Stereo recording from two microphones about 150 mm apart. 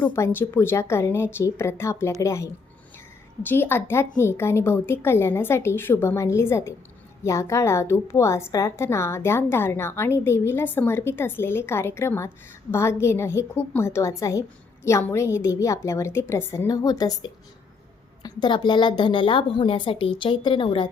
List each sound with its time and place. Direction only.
0.1 s a woman's voice: 15° left (ahead or behind); by 20.9 s 35° left (ahead or behind)